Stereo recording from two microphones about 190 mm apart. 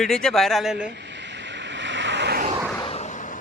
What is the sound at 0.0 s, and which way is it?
Speech, 5° left (ahead or behind).